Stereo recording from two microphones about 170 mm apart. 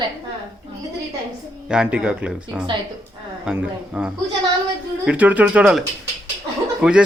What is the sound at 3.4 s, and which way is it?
Speech, 5° right (ahead or behind).